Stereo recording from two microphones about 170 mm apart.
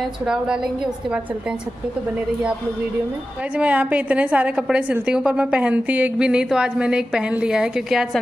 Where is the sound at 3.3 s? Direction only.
5° right (ahead or behind).